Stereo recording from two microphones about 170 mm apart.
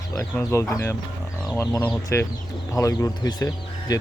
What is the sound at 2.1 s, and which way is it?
Speech, 15° left (ahead or behind).